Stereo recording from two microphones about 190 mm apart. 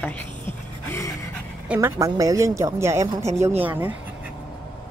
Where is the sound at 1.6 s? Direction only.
10° right (ahead or behind).